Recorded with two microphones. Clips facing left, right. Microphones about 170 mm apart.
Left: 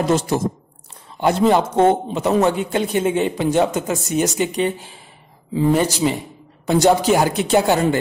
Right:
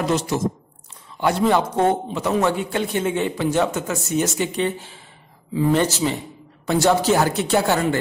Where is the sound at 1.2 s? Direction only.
20° left (ahead or behind).